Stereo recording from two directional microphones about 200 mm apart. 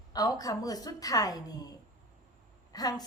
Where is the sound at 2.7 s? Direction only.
20° left (ahead or behind).